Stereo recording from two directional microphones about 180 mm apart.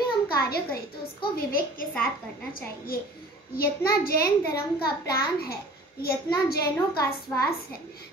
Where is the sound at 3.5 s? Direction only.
55° left (ahead or behind).